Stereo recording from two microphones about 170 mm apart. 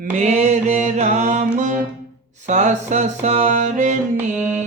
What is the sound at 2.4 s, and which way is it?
Music, 45° right (ahead or behind).